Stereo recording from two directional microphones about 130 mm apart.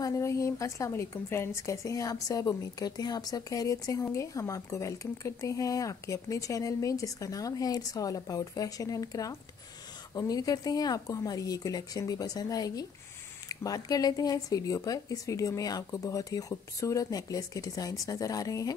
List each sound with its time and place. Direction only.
0.0 s a woman's voice: 25° left (ahead or behind)